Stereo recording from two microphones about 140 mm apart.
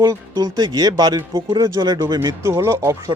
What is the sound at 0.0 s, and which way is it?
Speech, 30° right (ahead or behind).